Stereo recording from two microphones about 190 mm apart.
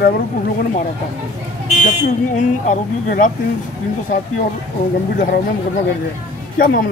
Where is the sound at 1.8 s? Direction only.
40° left (ahead or behind).